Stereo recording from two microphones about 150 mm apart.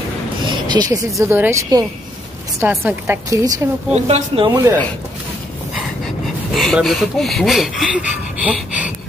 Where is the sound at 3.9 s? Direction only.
45° right (ahead or behind).